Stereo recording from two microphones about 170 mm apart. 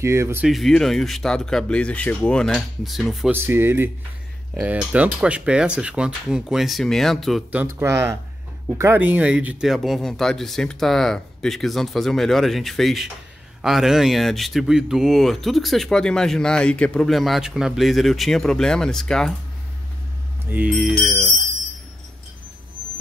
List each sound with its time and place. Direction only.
0.0 s speech: 15° right (ahead or behind)
0.5 s speech: centre (ahead or behind)
3.3 s speech: 10° right (ahead or behind)
7.5 s speech: 15° right (ahead or behind); by 19.3 s 5° left (ahead or behind)
20.4 s speech: 10° right (ahead or behind)